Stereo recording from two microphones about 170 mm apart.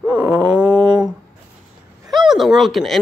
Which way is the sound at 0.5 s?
5° right (ahead or behind).